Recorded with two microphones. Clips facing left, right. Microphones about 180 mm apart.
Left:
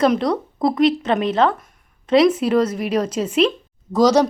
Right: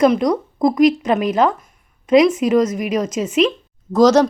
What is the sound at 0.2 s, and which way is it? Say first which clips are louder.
A woman's voice: right 3 dB; 15° right (ahead or behind).